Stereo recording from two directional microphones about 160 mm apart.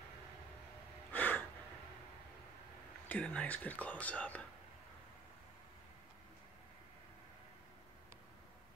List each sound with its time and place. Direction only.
1.1 s gasp: 10° left (ahead or behind)
3.1 s speech: 10° left (ahead or behind)